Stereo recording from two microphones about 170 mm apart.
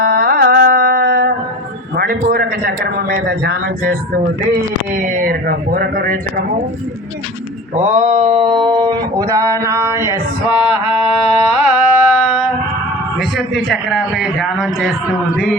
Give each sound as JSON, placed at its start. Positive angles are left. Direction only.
{"t": 0.0, "sound": "carnatic music", "side_deg": -65}
{"t": 2.3, "sound": "a man's voice", "side_deg": -60}
{"t": 4.9, "sound": "a man's voice", "side_deg": -55}
{"t": 7.8, "sound": "a sound", "side_deg": -45}
{"t": 8.4, "sound": "a sound", "side_deg": -30}
{"t": 10.5, "sound": "mantra", "side_deg": 30}
{"t": 11.6, "sound": "carnatic music", "side_deg": -10}
{"t": 13.6, "sound": "a man's voice", "side_deg": 0}